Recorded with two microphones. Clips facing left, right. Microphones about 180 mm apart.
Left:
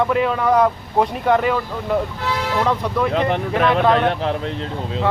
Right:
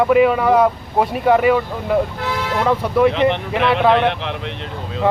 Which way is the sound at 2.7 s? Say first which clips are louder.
Right 9 dB; 10° right (ahead or behind).